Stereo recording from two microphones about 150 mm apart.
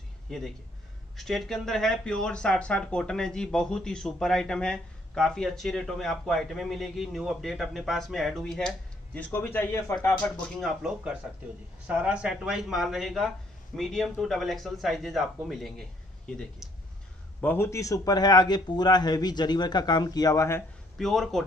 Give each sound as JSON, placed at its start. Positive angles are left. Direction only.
{"t": 0.3, "sound": "a man's voice", "side_deg": 5}
{"t": 10.6, "sound": "speech", "side_deg": 0}
{"t": 17.4, "sound": "a man's voice", "side_deg": 15}
{"t": 21.0, "sound": "speech", "side_deg": 0}